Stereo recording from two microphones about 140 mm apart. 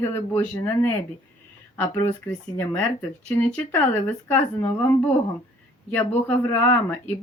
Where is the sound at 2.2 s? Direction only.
15° left (ahead or behind).